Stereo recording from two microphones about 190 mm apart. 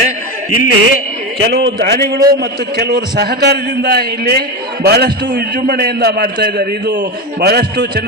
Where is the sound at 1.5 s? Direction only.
60° right (ahead or behind).